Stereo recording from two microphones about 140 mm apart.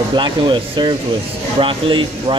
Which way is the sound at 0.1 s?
35° right (ahead or behind).